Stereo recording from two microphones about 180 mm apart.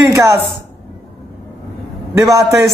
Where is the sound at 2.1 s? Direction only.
15° right (ahead or behind).